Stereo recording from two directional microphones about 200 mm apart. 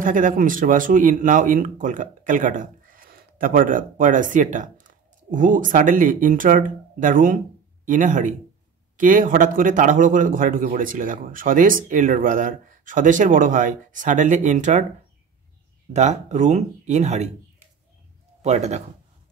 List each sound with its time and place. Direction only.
0.0 s speech: 40° right (ahead or behind)
15.9 s speech: 35° right (ahead or behind)
18.4 s a man's voice: 35° right (ahead or behind)